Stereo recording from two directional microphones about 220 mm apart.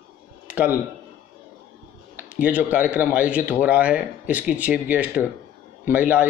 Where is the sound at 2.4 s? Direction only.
5° right (ahead or behind).